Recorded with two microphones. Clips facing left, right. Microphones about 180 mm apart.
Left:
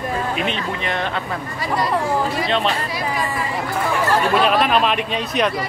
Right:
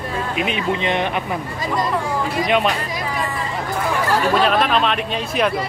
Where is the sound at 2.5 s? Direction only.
10° right (ahead or behind).